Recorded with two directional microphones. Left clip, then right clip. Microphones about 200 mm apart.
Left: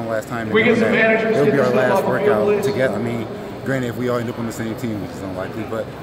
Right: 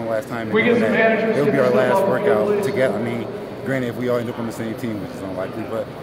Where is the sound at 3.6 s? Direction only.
10° left (ahead or behind).